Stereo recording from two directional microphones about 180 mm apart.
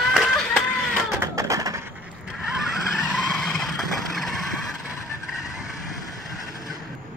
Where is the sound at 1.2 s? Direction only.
15° right (ahead or behind).